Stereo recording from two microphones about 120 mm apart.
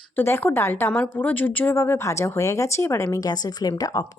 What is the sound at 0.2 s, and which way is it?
A woman's voice, 20° left (ahead or behind).